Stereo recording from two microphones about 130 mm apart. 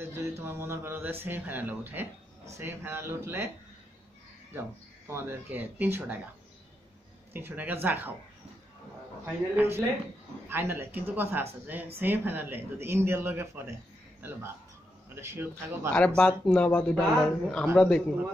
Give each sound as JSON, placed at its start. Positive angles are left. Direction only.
{"t": 0.4, "sound": "speech", "side_deg": -20}
{"t": 4.6, "sound": "speech", "side_deg": -20}
{"t": 7.3, "sound": "speech", "side_deg": -15}
{"t": 9.2, "sound": "speech", "side_deg": -15}
{"t": 15.1, "sound": "speech", "side_deg": -20}
{"t": 16.2, "sound": "speech", "side_deg": 10}